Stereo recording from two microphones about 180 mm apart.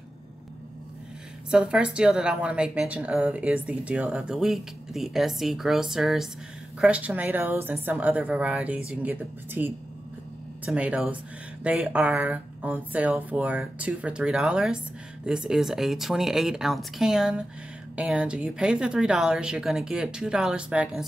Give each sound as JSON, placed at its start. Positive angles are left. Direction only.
{"t": 1.5, "sound": "a woman's voice", "side_deg": -5}